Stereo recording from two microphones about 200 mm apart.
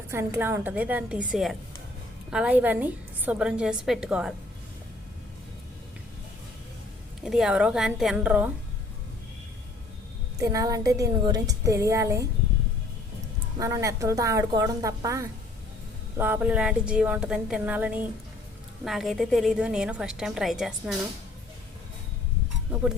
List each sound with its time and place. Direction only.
0.1 s a woman's voice: 10° right (ahead or behind)
7.2 s a woman's voice: centre (ahead or behind)
10.3 s a woman's voice: 15° right (ahead or behind)
13.6 s a woman's voice: 15° right (ahead or behind)
22.7 s a woman's voice: 5° right (ahead or behind)